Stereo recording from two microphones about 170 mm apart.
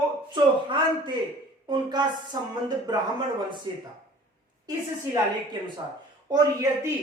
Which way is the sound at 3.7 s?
25° right (ahead or behind).